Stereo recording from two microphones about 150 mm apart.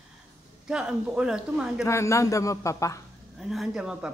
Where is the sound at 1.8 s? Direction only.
20° left (ahead or behind).